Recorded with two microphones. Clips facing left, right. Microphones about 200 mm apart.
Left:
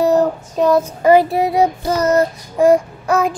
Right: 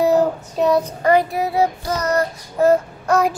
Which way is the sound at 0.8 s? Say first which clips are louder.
Left 5 dB; 25° left (ahead or behind).